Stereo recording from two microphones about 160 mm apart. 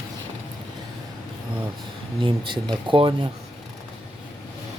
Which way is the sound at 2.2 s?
30° right (ahead or behind).